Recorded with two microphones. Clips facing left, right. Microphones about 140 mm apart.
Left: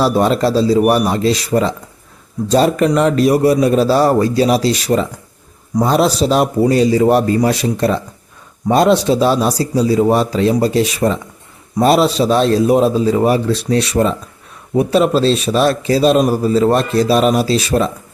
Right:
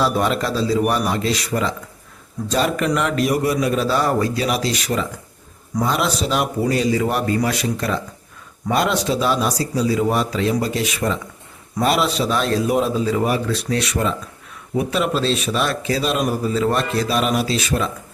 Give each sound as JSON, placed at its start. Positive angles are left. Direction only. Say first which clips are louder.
{"t": 0.0, "sound": "speech", "louder": "left 6 dB", "side_deg": 35}